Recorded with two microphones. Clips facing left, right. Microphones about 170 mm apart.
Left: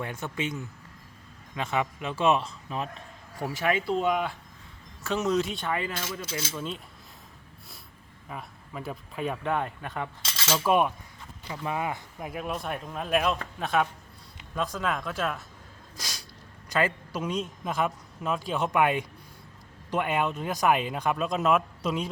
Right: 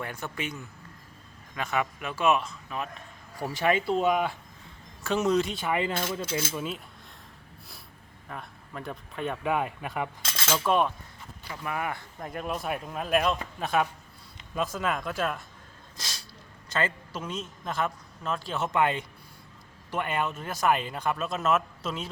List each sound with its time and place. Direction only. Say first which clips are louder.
0.0 s a man's voice: left 2 dB; 20° left (ahead or behind)
3.4 s speech: right 1 dB; centre (ahead or behind)
5.6 s speech: right 3 dB; 20° right (ahead or behind)
8.3 s speech: left 1 dB; 5° left (ahead or behind)
10.2 s cutlery: right 1 dB; 55° right (ahead or behind)
10.5 s a man's voice: left 1 dB; 10° left (ahead or behind)
11.4 s a man's voice: left 2 dB; 20° left (ahead or behind)
12.3 s speech: right 1 dB; centre (ahead or behind)
16.0 s snort: left 1 dB; 10° left (ahead or behind)
16.6 s a man's voice: left 3 dB; 10° left (ahead or behind)